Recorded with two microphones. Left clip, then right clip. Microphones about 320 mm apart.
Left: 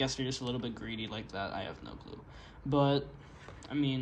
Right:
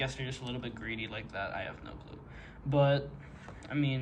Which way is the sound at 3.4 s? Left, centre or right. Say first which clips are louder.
Even; centre.